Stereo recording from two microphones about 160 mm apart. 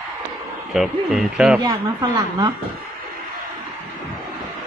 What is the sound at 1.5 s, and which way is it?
Speech, 25° right (ahead or behind).